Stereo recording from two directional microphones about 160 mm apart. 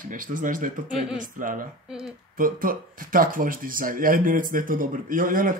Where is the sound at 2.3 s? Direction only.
60° right (ahead or behind).